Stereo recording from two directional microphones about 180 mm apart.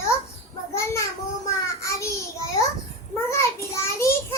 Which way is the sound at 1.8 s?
15° left (ahead or behind).